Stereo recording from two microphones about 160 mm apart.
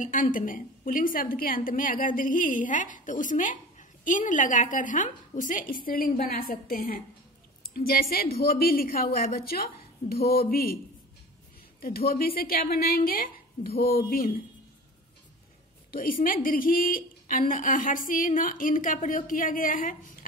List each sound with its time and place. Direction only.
0.0 s a woman's voice: 55° left (ahead or behind)
11.8 s a woman's voice: 70° left (ahead or behind)
15.9 s a woman's voice: 60° left (ahead or behind)